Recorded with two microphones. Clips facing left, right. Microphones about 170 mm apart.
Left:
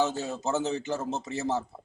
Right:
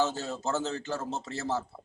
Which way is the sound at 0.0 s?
15° left (ahead or behind).